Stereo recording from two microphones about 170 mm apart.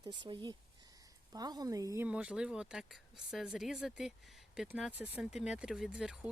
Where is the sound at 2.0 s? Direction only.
5° right (ahead or behind).